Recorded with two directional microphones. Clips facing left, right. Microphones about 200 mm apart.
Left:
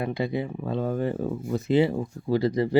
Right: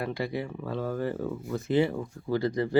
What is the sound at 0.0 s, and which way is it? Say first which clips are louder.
Speech: left 4 dB; 20° left (ahead or behind).